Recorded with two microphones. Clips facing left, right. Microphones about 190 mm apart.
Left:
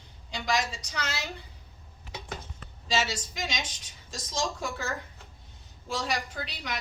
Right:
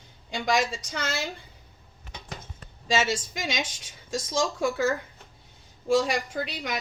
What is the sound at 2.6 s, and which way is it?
A woman's voice, 50° right (ahead or behind).